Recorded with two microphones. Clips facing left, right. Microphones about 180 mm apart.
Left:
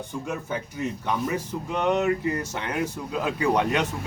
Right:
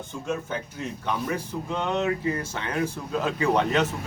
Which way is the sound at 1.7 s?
15° left (ahead or behind).